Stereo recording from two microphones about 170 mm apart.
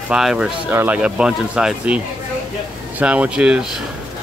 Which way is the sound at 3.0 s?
5° right (ahead or behind).